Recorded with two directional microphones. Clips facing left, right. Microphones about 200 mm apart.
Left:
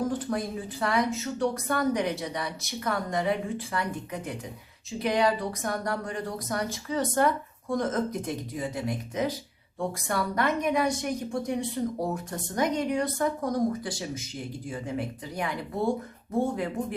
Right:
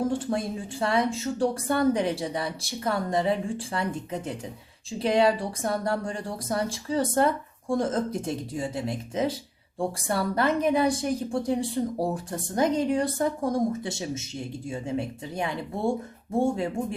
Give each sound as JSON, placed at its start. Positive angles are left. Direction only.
{"t": 0.0, "sound": "speech", "side_deg": -25}